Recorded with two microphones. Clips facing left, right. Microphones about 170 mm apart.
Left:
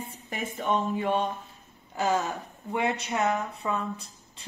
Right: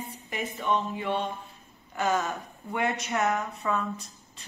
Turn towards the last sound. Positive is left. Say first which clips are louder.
# left 2 dB
turn(degrees=30)  # may be behind; listen again after turning